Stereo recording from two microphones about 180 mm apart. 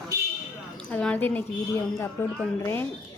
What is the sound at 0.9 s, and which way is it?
Speech, 5° left (ahead or behind).